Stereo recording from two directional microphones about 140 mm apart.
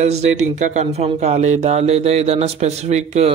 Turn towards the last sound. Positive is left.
turn(degrees=-50)  # may be behind; listen again after turning